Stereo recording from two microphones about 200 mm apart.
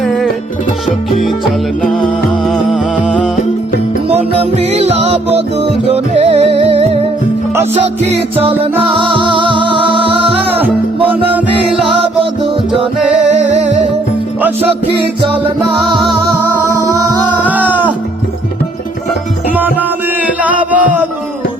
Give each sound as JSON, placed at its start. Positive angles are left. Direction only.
{"t": 0.0, "sound": "music", "side_deg": 0}
{"t": 1.8, "sound": "music", "side_deg": 0}
{"t": 4.7, "sound": "music", "side_deg": -35}
{"t": 11.3, "sound": "music", "side_deg": -5}
{"t": 13.1, "sound": "music", "side_deg": -35}
{"t": 16.0, "sound": "music", "side_deg": 0}
{"t": 16.7, "sound": "music", "side_deg": -15}
{"t": 20.4, "sound": "music", "side_deg": -5}